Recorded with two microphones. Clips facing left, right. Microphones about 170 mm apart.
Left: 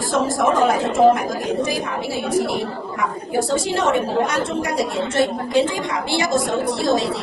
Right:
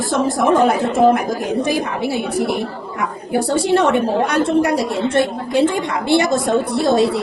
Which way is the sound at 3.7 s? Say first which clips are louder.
Right 4 dB; 60° right (ahead or behind).